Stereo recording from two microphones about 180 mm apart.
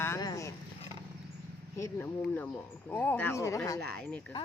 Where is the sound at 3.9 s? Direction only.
5° left (ahead or behind).